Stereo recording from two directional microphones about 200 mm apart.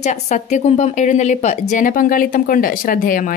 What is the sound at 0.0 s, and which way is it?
Speech, 35° left (ahead or behind).